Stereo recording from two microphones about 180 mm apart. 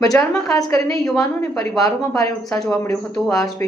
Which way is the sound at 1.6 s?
20° left (ahead or behind).